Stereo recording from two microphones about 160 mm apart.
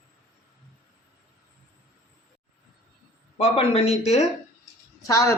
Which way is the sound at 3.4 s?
40° left (ahead or behind).